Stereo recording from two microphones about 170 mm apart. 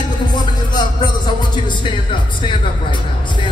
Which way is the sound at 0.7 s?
25° left (ahead or behind).